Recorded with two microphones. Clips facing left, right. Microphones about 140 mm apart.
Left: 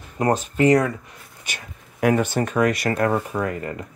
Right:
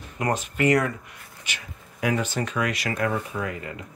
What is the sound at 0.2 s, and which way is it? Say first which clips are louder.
Speech: left 5 dB; 35° left (ahead or behind).